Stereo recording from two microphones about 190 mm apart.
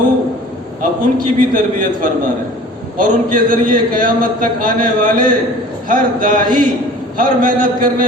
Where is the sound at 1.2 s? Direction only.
45° right (ahead or behind).